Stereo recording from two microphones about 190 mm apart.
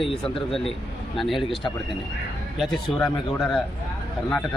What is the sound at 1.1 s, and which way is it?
Speech, centre (ahead or behind).